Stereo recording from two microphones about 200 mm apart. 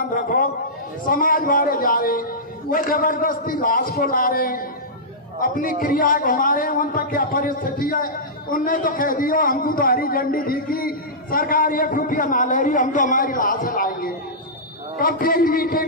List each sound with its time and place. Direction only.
0.1 s a man's voice: 45° left (ahead or behind)